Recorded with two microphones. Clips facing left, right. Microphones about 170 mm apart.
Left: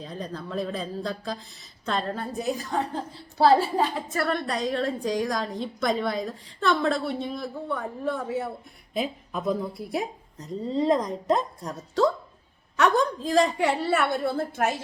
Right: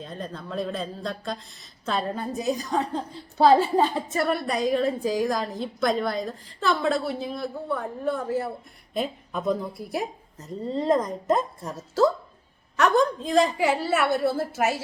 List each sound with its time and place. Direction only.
0.0 s a woman's voice: centre (ahead or behind); by 4.3 s 20° right (ahead or behind)
4.3 s a woman's voice: 10° right (ahead or behind)